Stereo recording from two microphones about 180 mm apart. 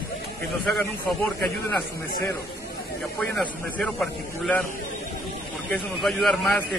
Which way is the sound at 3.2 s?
5° left (ahead or behind).